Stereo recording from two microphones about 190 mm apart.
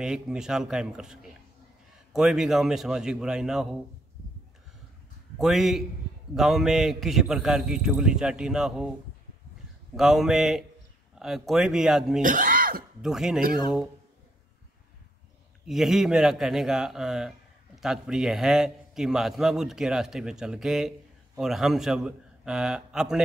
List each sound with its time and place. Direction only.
0.0 s a man's voice: 5° right (ahead or behind)
5.4 s a man's voice: centre (ahead or behind)
9.9 s a man's voice: centre (ahead or behind)
12.2 s a sound: 45° right (ahead or behind)
13.0 s a man's voice: centre (ahead or behind)
15.6 s a man's voice: centre (ahead or behind)